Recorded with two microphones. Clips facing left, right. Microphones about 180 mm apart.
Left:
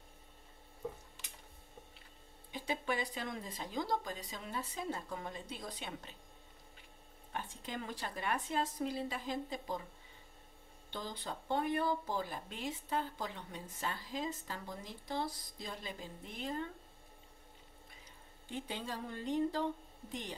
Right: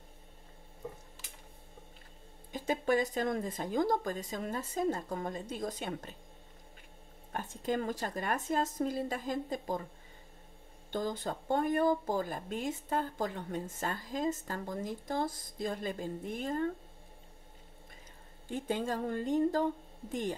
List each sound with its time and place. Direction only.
2.5 s speech: 45° right (ahead or behind)
7.3 s speech: 45° right (ahead or behind)
10.9 s speech: 45° right (ahead or behind)
18.5 s speech: 50° right (ahead or behind)